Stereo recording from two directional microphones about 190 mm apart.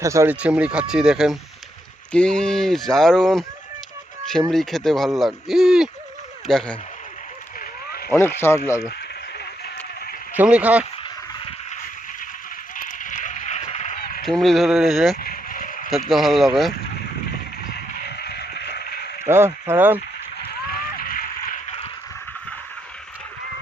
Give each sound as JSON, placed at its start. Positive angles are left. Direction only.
{"t": 0.0, "sound": "speech", "side_deg": -15}
{"t": 4.5, "sound": "speech", "side_deg": 0}
{"t": 8.1, "sound": "speech", "side_deg": 10}
{"t": 10.3, "sound": "speech", "side_deg": -5}
{"t": 12.7, "sound": "run", "side_deg": 45}
{"t": 14.3, "sound": "speech", "side_deg": 0}
{"t": 15.2, "sound": "a sound", "side_deg": 50}
{"t": 15.9, "sound": "speech", "side_deg": 0}
{"t": 17.6, "sound": "a sound", "side_deg": 55}
{"t": 19.2, "sound": "speech", "side_deg": -15}
{"t": 20.5, "sound": "a sound", "side_deg": 50}